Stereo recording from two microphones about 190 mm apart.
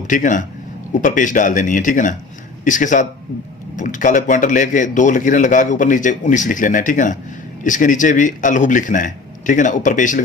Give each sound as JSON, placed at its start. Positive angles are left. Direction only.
{"t": 0.1, "sound": "speech", "side_deg": 45}